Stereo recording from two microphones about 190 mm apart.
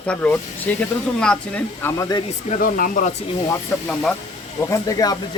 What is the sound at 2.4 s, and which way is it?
Speech, 45° left (ahead or behind).